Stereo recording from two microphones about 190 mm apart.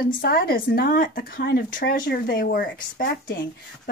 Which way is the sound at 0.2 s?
50° left (ahead or behind).